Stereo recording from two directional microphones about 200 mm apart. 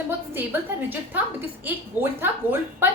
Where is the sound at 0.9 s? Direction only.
10° right (ahead or behind).